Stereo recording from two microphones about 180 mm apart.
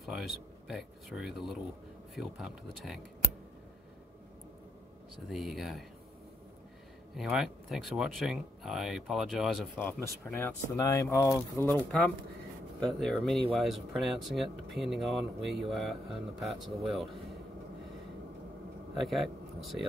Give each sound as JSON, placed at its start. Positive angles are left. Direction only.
{"t": 0.0, "sound": "speech", "side_deg": 0}
{"t": 5.3, "sound": "speech", "side_deg": 0}
{"t": 7.2, "sound": "speech", "side_deg": 0}
{"t": 10.2, "sound": "speech", "side_deg": 15}
{"t": 12.8, "sound": "speech", "side_deg": 0}
{"t": 18.9, "sound": "speech", "side_deg": 0}